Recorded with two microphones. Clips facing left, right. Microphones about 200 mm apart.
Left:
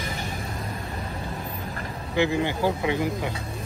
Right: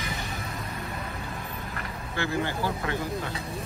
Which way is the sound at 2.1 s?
15° left (ahead or behind).